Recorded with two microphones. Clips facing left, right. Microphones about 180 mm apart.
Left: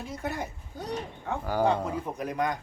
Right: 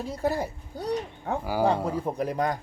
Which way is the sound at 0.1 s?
35° right (ahead or behind).